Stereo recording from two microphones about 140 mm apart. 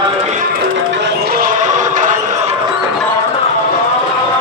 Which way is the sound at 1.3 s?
70° right (ahead or behind).